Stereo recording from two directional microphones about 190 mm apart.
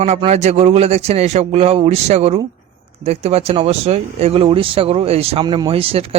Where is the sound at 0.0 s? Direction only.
30° right (ahead or behind).